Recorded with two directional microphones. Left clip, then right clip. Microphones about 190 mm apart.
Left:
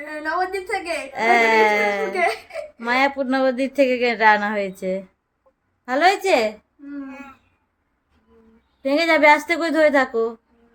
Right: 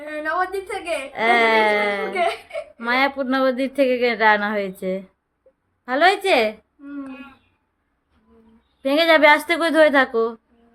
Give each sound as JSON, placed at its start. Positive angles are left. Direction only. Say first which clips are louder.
{"t": 0.0, "sound": "a woman's voice", "louder": "right 1 dB", "side_deg": -25}
{"t": 1.1, "sound": "speech", "louder": "left 1 dB", "side_deg": 5}
{"t": 8.8, "sound": "speech", "louder": "right 1 dB", "side_deg": -10}